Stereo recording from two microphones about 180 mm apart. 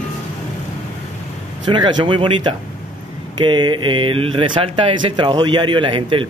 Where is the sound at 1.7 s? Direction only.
25° right (ahead or behind).